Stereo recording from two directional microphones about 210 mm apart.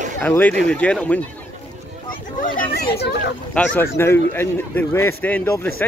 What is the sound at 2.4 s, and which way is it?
Children playing, 45° left (ahead or behind).